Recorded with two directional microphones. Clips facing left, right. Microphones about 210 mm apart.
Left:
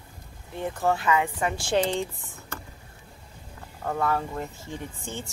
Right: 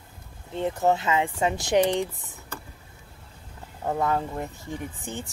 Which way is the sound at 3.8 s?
20° right (ahead or behind).